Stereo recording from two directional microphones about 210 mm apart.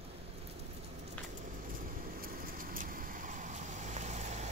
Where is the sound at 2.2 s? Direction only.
45° right (ahead or behind).